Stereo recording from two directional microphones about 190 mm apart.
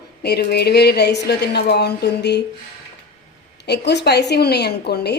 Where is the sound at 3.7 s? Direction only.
60° left (ahead or behind).